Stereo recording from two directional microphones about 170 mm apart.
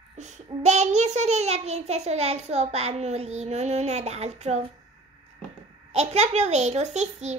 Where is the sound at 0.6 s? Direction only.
45° right (ahead or behind).